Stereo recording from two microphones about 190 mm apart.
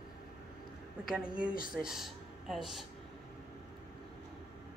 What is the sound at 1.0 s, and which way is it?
A woman's voice, centre (ahead or behind).